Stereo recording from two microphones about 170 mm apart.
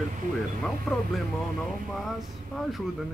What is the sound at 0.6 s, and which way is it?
Speech, 5° left (ahead or behind).